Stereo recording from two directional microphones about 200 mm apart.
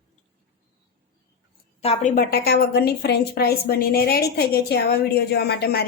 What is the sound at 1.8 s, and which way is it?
A woman's voice, 35° left (ahead or behind).